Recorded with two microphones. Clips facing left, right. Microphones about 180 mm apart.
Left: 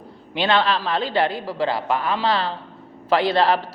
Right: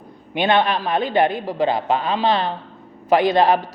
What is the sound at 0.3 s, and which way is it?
A man's voice, 20° right (ahead or behind).